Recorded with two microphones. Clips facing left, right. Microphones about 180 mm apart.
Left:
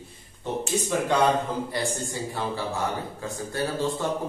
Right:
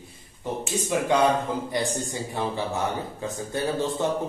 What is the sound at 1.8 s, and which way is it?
A man's voice, 20° right (ahead or behind).